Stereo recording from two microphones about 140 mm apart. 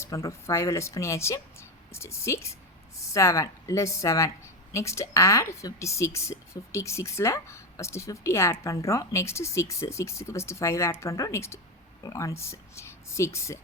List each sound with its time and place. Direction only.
0.0 s a woman's voice: 20° left (ahead or behind)